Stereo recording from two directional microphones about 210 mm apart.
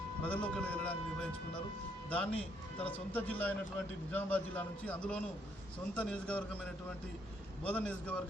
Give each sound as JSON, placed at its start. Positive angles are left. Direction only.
{"t": 0.2, "sound": "a man's voice", "side_deg": 5}
{"t": 7.7, "sound": "speech", "side_deg": 5}